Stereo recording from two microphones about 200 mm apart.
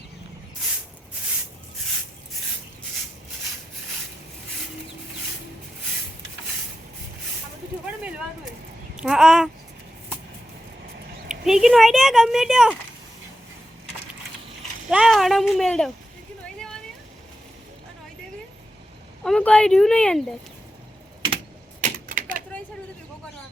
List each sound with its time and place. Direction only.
9.0 s speech: centre (ahead or behind)
11.3 s speech: centre (ahead or behind)
14.8 s speech: 5° right (ahead or behind)
19.2 s speech: 5° left (ahead or behind)
21.8 s typewriter: 45° right (ahead or behind)